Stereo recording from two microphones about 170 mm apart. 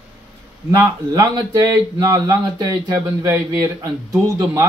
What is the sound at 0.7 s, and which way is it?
Speech, 25° right (ahead or behind).